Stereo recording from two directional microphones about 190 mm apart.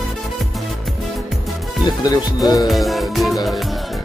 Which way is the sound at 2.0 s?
20° left (ahead or behind).